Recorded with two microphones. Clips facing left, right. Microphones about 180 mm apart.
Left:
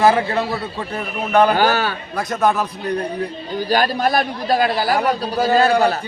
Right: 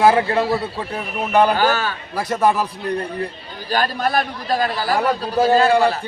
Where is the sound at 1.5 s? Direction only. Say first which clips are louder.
Left 2 dB; 40° left (ahead or behind).